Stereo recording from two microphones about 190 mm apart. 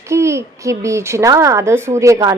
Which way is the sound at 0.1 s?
15° right (ahead or behind).